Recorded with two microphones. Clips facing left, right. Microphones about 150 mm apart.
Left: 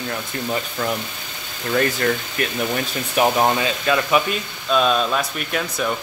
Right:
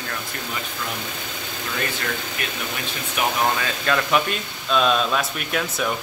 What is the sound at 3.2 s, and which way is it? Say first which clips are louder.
Speech: left 5 dB; 30° left (ahead or behind).